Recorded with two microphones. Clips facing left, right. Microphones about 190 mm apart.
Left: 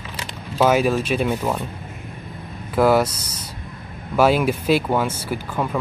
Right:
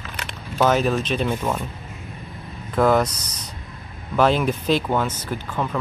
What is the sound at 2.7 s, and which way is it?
Speech, 5° left (ahead or behind).